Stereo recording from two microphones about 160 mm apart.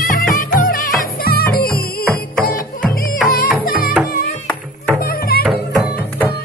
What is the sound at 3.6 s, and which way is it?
Music, 65° left (ahead or behind).